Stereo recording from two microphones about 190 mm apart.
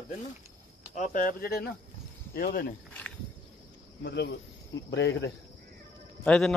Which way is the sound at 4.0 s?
60° left (ahead or behind).